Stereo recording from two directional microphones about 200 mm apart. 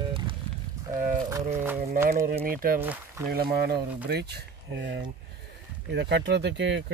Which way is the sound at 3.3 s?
50° right (ahead or behind).